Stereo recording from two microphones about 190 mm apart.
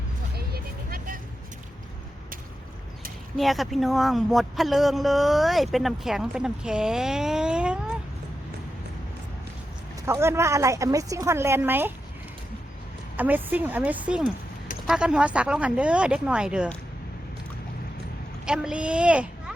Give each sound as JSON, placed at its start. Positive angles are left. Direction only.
{"t": 0.3, "sound": "vehicle", "side_deg": -50}
{"t": 3.3, "sound": "a man's voice", "side_deg": 0}
{"t": 10.1, "sound": "a woman's voice", "side_deg": -15}
{"t": 13.1, "sound": "a woman's voice", "side_deg": -10}
{"t": 18.4, "sound": "a woman's voice", "side_deg": -5}